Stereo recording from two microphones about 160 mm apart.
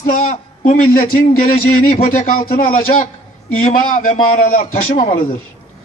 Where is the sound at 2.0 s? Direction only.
60° left (ahead or behind).